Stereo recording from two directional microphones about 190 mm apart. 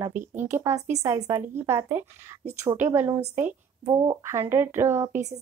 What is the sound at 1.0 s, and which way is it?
A woman's voice, 15° right (ahead or behind).